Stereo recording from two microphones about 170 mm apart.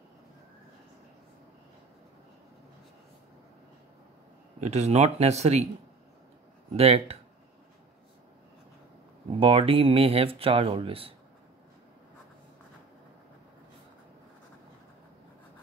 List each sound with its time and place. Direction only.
4.6 s speech: 40° right (ahead or behind)
6.8 s speech: 35° right (ahead or behind)
9.4 s speech: 35° right (ahead or behind)